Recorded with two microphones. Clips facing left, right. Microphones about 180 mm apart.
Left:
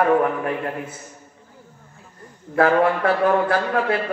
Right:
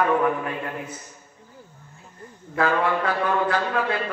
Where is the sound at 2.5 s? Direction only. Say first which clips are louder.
Left 5 dB; 50° left (ahead or behind).